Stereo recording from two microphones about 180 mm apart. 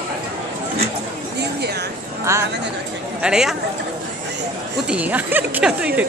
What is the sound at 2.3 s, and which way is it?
Speech, 15° right (ahead or behind).